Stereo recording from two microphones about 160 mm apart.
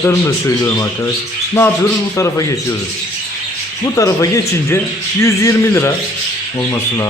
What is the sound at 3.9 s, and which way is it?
Speech, 20° left (ahead or behind).